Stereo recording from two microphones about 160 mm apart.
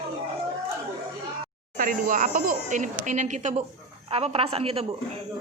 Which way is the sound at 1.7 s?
65° right (ahead or behind).